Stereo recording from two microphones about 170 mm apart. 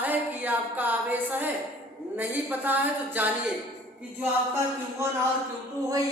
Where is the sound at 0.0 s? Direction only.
10° right (ahead or behind).